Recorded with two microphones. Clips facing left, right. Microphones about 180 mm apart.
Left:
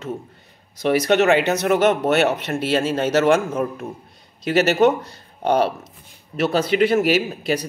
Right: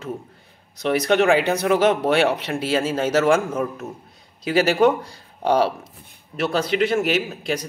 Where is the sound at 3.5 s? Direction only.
10° left (ahead or behind).